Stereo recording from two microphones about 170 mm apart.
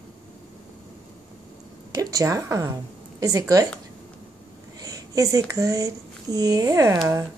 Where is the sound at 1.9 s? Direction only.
20° right (ahead or behind).